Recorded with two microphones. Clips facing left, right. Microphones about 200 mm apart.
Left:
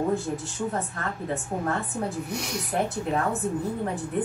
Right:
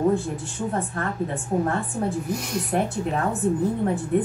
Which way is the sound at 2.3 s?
Centre (ahead or behind).